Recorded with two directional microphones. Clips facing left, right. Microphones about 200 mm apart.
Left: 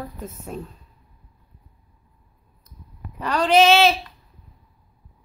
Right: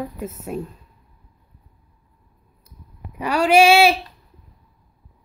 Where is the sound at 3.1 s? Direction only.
10° right (ahead or behind).